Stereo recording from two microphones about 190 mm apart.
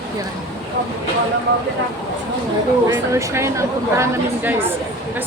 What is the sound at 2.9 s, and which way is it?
A woman's voice, 15° right (ahead or behind).